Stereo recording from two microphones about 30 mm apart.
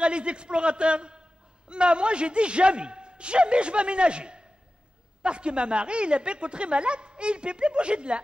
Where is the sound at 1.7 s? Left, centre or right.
Right.